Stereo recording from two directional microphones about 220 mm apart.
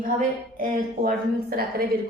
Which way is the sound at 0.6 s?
40° right (ahead or behind).